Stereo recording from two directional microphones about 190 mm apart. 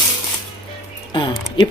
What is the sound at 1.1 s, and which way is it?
Music, 25° left (ahead or behind).